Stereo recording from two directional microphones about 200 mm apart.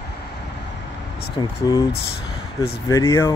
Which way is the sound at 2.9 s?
15° left (ahead or behind).